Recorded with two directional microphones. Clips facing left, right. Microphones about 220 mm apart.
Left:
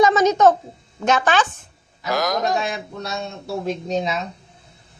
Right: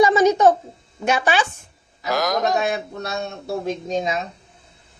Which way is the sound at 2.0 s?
Centre (ahead or behind).